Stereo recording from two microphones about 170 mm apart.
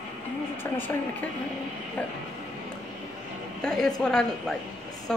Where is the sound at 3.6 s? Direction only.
5° left (ahead or behind).